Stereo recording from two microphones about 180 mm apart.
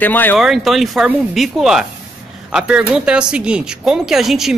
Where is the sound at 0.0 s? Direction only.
10° left (ahead or behind).